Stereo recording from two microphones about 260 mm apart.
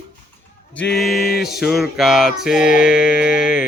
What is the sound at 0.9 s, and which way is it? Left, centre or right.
Music, centre.